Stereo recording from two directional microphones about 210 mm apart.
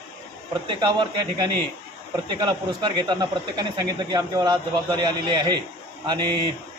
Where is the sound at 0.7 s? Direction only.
20° right (ahead or behind).